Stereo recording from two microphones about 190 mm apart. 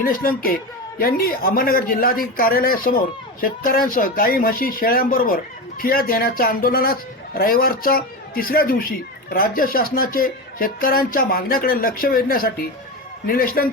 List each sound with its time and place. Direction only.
0.1 s speech: 50° left (ahead or behind)